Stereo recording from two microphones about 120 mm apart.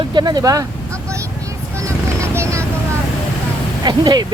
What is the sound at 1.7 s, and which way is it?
Vehicle, 25° right (ahead or behind).